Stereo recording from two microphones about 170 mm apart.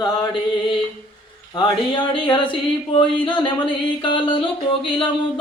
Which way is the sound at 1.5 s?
30° left (ahead or behind).